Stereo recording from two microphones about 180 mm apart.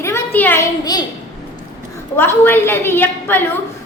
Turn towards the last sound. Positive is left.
turn(degrees=10)  # may be behind; listen again after turning